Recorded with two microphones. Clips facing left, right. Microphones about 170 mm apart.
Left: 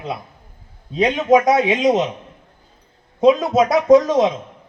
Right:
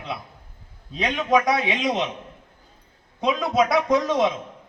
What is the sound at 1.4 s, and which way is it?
Speech, 45° left (ahead or behind).